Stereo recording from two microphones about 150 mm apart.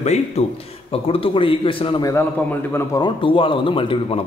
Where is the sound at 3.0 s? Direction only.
35° left (ahead or behind).